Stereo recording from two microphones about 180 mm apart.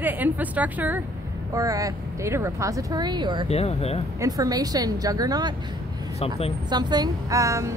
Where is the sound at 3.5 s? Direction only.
35° left (ahead or behind).